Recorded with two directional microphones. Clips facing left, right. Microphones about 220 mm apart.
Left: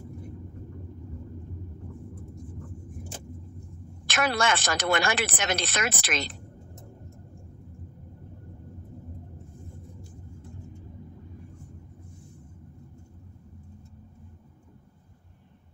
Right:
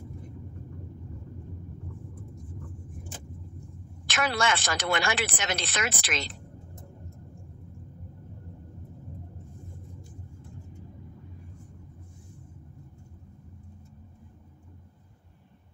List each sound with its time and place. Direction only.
4.0 s a woman's voice: 50° left (ahead or behind)